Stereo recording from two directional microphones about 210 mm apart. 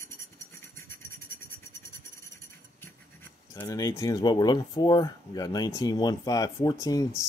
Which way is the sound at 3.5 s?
15° left (ahead or behind).